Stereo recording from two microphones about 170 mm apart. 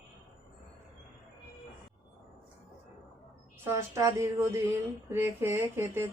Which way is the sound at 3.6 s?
15° right (ahead or behind).